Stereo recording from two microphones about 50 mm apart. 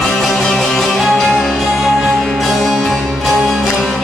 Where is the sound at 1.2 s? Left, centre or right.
Centre.